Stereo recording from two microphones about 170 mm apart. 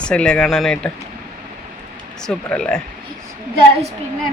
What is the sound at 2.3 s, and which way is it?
Speech, 5° left (ahead or behind).